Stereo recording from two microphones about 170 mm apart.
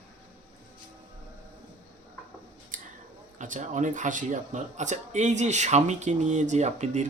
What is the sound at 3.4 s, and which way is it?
Speech, 45° right (ahead or behind).